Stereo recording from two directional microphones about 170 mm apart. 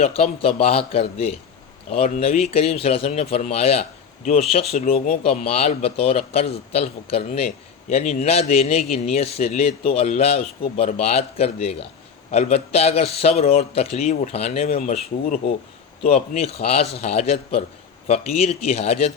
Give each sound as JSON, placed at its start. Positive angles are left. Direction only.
{"t": 0.0, "sound": "a man's voice", "side_deg": 35}
{"t": 4.7, "sound": "speech", "side_deg": 50}
{"t": 5.2, "sound": "a man's voice", "side_deg": 35}